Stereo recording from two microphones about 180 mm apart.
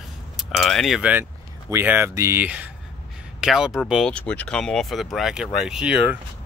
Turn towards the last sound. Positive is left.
turn(degrees=-5)  # may be behind; listen again after turning